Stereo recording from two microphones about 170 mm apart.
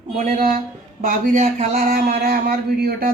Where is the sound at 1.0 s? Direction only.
50° right (ahead or behind).